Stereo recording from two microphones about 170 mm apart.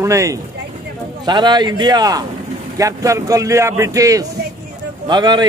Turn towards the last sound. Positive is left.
turn(degrees=-25)  # may be behind; listen again after turning